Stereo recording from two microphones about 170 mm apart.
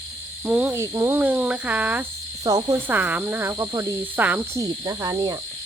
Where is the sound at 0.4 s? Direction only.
10° right (ahead or behind).